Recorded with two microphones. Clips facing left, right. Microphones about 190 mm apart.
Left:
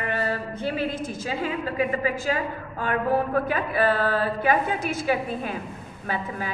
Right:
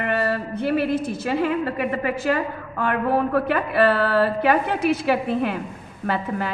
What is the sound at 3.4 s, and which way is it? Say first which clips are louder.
A woman's voice: right 4 dB; 65° right (ahead or behind).